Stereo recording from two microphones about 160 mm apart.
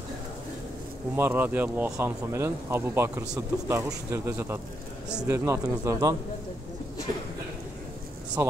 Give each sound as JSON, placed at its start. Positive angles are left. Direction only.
{"t": 1.1, "sound": "speech", "side_deg": -15}
{"t": 8.4, "sound": "speech", "side_deg": -20}